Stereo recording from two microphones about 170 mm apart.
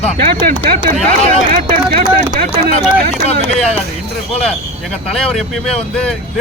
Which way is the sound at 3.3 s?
40° left (ahead or behind).